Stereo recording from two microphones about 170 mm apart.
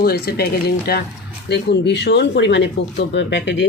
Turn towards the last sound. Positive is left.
turn(degrees=90)